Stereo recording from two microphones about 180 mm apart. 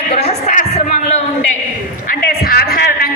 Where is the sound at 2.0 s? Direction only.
55° left (ahead or behind).